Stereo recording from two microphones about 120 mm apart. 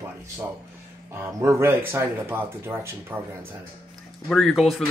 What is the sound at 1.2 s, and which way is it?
Speech, 20° right (ahead or behind).